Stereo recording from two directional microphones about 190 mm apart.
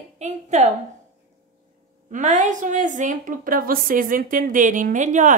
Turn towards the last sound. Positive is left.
turn(degrees=-40)  # may be behind; listen again after turning